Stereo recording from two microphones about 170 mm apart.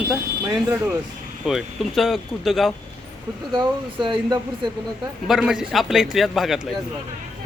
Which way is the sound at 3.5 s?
25° right (ahead or behind).